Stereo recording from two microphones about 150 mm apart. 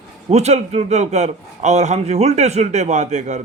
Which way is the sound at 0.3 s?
45° right (ahead or behind).